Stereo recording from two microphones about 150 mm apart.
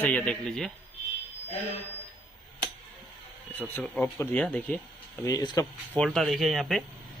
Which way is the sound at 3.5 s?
10° left (ahead or behind).